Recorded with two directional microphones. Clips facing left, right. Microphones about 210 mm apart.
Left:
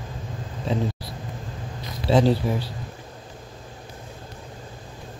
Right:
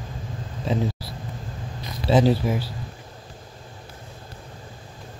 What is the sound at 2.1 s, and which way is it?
Speech, 5° right (ahead or behind).